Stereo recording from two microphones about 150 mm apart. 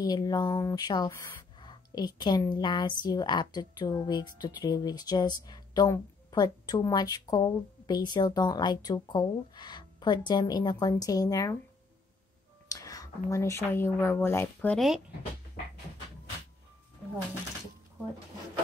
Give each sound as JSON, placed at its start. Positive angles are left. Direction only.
{"t": 0.0, "sound": "a woman's voice", "side_deg": 25}
{"t": 12.6, "sound": "speech", "side_deg": 25}